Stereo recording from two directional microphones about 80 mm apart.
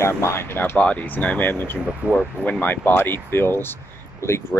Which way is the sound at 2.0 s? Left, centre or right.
Centre.